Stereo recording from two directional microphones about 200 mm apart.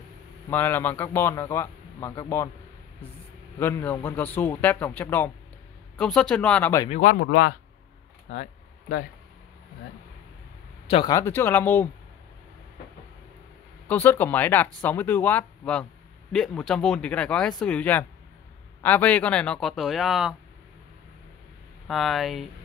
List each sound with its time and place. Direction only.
0.5 s speech: 10° left (ahead or behind)
3.5 s speech: 10° left (ahead or behind)
6.9 s speech: 40° left (ahead or behind)
7.2 s speech: 55° left (ahead or behind)
8.3 s speech: 35° left (ahead or behind)
10.9 s speech: 25° left (ahead or behind)
11.1 s speech: 10° left (ahead or behind)
13.8 s speech: 10° left (ahead or behind)
21.8 s speech: centre (ahead or behind)